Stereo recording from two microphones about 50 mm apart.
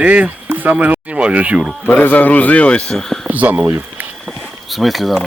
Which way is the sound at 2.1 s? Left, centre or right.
Left.